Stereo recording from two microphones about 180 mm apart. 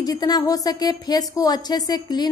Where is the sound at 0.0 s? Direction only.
20° left (ahead or behind).